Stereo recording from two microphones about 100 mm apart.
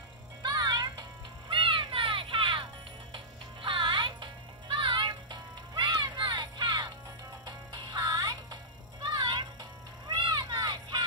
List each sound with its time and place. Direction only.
0.4 s music: 45° right (ahead or behind)
1.5 s music: 55° right (ahead or behind)
3.6 s music: 55° right (ahead or behind)